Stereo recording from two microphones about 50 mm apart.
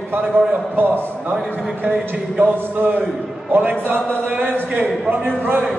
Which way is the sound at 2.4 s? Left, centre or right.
Right.